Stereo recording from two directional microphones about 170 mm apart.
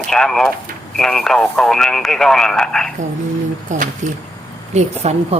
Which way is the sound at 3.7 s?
45° right (ahead or behind).